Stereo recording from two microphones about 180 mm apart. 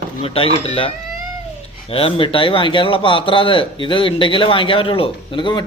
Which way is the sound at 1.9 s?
30° left (ahead or behind).